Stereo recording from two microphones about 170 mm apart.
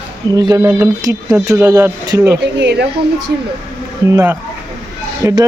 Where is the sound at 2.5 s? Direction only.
85° right.